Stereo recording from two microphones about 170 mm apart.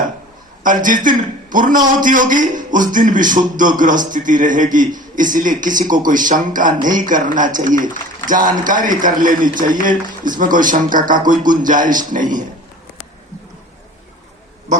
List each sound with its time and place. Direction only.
0.6 s a man's voice: 50° right (ahead or behind)